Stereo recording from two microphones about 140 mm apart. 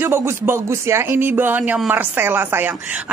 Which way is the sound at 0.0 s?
15° right (ahead or behind).